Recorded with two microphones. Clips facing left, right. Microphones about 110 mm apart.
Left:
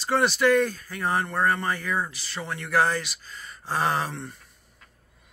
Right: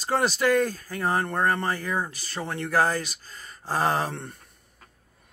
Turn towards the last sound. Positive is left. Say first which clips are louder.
# right 1 dB
turn(degrees=-55)  # may be behind; listen again after turning